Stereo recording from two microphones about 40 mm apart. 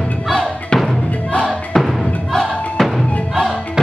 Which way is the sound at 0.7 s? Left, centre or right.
Left.